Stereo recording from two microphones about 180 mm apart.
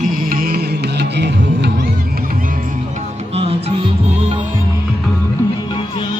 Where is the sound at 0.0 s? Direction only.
50° right (ahead or behind); by 1.7 s 70° right (ahead or behind).